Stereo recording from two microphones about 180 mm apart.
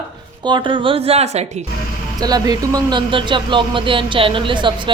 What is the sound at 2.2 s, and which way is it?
Speech, 20° right (ahead or behind).